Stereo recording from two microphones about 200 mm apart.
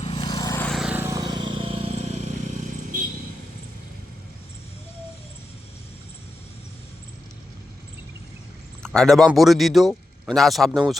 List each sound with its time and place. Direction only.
0.0 s vehicle: 25° left (ahead or behind)
0.7 s vehicle: 5° right (ahead or behind); by 2.3 s 30° right (ahead or behind)
8.8 s a man's voice: 5° left (ahead or behind)